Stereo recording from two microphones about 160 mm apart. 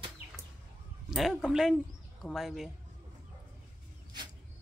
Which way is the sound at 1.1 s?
Centre (ahead or behind).